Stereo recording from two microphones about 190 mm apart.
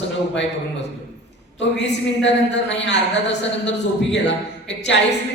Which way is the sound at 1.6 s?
65° left (ahead or behind).